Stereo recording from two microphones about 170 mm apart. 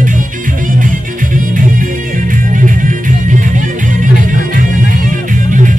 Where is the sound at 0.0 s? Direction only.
50° right (ahead or behind).